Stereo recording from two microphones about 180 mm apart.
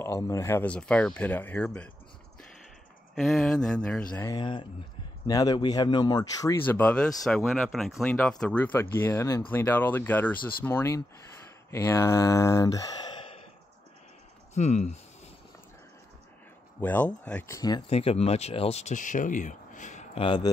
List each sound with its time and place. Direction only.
0.0 s speech: 15° left (ahead or behind)
3.2 s speech: centre (ahead or behind)
4.3 s speech: 25° left (ahead or behind)
6.6 s speech: 10° left (ahead or behind)
14.5 s speech: 40° left (ahead or behind)
16.8 s speech: 10° left (ahead or behind)
17.8 s speech: 35° left (ahead or behind)